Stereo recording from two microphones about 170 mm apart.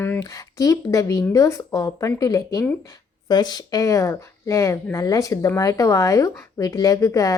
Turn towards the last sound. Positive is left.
turn(degrees=20)  # may be behind; listen again after turning